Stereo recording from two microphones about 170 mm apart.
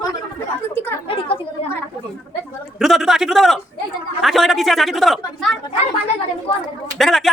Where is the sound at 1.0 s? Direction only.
30° left (ahead or behind).